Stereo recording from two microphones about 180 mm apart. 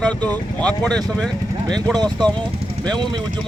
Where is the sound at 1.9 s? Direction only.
25° right (ahead or behind).